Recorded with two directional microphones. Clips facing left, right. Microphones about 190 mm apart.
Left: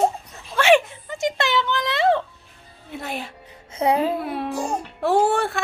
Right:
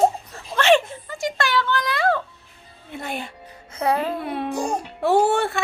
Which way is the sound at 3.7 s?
20° left (ahead or behind).